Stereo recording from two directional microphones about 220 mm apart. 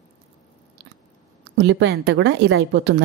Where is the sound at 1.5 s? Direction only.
55° right (ahead or behind).